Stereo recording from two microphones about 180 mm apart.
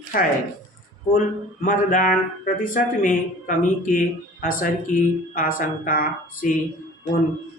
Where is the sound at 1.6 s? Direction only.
45° left (ahead or behind).